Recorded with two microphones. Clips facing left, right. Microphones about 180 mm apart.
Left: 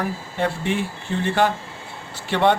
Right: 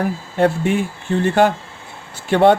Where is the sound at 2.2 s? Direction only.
50° right (ahead or behind).